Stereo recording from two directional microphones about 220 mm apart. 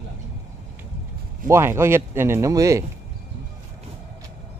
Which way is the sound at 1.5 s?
10° right (ahead or behind).